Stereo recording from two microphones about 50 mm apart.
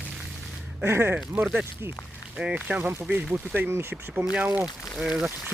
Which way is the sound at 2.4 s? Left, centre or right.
Centre.